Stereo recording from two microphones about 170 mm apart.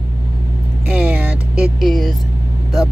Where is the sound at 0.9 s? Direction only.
10° right (ahead or behind).